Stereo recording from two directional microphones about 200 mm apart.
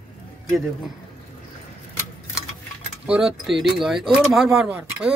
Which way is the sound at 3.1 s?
5° right (ahead or behind).